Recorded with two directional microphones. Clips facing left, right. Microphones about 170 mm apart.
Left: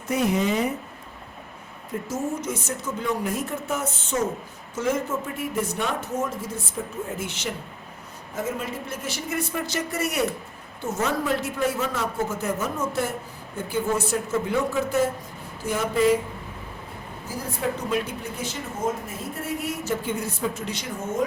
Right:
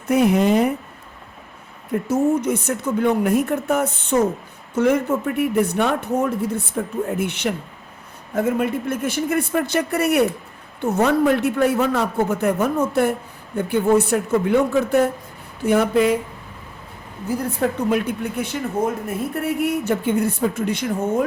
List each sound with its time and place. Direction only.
0.1 s a man's voice: 60° right (ahead or behind)
1.9 s a man's voice: 60° right (ahead or behind)
17.2 s a man's voice: 60° right (ahead or behind)